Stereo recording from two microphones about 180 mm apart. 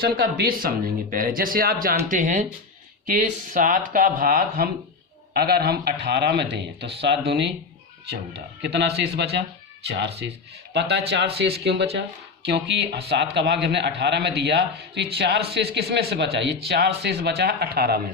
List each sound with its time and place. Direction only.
0.0 s a man's voice: 60° right (ahead or behind)
8.6 s a man's voice: 70° right (ahead or behind)